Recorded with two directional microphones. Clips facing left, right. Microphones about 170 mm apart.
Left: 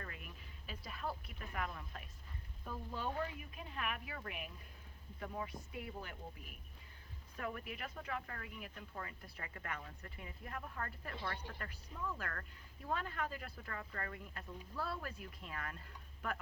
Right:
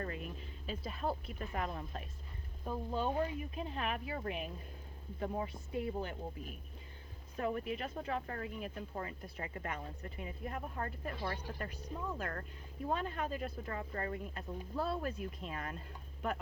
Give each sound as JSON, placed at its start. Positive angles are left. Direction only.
{"t": 0.0, "sound": "speech", "side_deg": -30}